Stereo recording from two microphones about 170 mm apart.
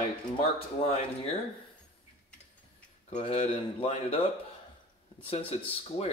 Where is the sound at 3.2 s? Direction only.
40° left (ahead or behind).